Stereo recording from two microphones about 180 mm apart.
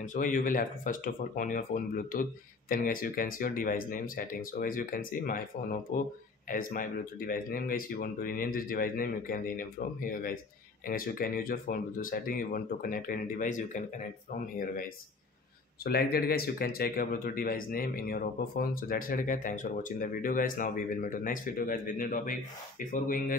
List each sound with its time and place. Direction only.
0.0 s speech: 45° left (ahead or behind)
15.8 s speech: 60° left (ahead or behind)